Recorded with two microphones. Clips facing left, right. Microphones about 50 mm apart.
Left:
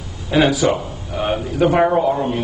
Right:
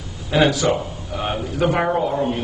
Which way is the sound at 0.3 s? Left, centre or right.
Centre.